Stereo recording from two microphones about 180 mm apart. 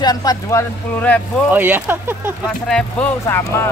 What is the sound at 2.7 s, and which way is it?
Speech, 5° left (ahead or behind).